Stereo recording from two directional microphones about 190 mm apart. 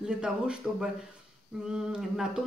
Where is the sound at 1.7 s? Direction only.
5° right (ahead or behind).